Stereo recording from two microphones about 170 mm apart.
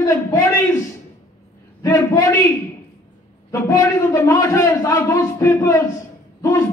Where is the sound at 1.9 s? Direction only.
20° left (ahead or behind).